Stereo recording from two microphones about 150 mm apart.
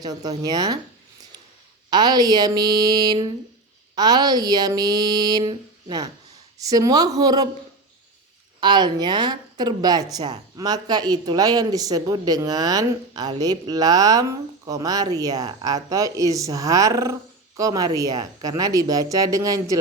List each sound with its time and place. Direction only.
0.0 s speech: 25° right (ahead or behind)
1.9 s speech: 25° right (ahead or behind)
8.6 s speech: 30° right (ahead or behind)